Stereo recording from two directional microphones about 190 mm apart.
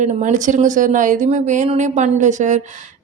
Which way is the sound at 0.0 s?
40° right (ahead or behind).